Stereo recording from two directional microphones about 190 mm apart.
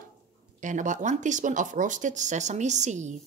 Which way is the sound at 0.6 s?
40° right (ahead or behind).